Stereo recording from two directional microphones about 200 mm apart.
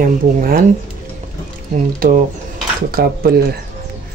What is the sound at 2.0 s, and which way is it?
Speech, 45° right (ahead or behind).